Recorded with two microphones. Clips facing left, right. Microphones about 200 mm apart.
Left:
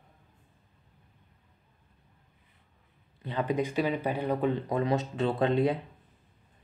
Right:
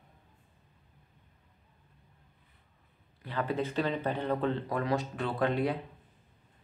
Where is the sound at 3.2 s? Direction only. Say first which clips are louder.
Left 3 dB; 20° left (ahead or behind).